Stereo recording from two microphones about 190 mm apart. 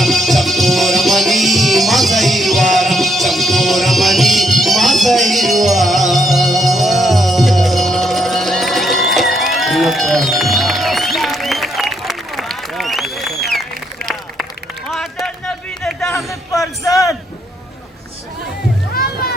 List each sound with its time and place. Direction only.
0.0 s music: centre (ahead or behind)
14.8 s music: centre (ahead or behind)
16.1 s a sound: 15° left (ahead or behind)
18.9 s music: 50° left (ahead or behind)